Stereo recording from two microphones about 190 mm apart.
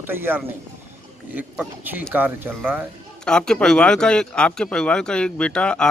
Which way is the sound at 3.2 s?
5° left (ahead or behind).